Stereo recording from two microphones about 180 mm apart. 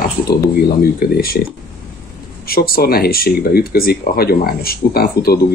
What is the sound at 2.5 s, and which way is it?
Speech, 55° left (ahead or behind).